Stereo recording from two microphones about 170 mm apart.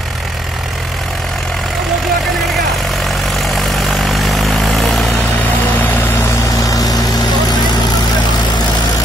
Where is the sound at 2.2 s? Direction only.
Centre (ahead or behind).